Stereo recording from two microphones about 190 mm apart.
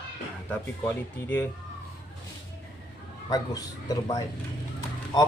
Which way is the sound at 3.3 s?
20° left (ahead or behind).